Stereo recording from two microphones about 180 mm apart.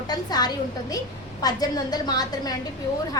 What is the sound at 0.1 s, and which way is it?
A woman's voice, 20° left (ahead or behind).